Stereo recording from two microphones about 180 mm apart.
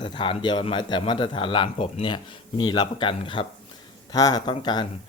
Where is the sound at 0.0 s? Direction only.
25° left (ahead or behind).